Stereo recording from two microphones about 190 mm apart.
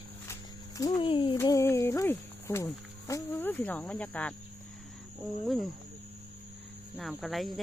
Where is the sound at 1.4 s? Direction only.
15° left (ahead or behind).